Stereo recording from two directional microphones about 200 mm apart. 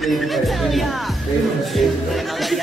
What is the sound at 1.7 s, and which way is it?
Chatter, centre (ahead or behind).